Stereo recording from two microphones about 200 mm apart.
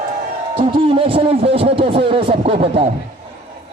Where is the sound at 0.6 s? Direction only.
25° right (ahead or behind).